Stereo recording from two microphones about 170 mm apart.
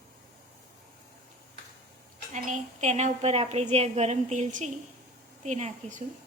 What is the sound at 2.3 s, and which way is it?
A woman's voice, 45° right (ahead or behind).